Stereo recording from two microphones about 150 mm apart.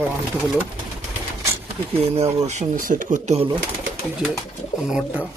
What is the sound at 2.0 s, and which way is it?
Speech, 45° right (ahead or behind).